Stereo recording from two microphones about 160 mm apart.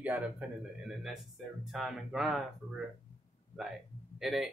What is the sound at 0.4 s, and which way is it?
A man's voice, 10° right (ahead or behind).